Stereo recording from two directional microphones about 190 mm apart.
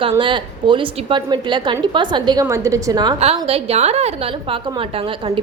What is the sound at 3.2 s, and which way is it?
A woman's voice, 30° right (ahead or behind).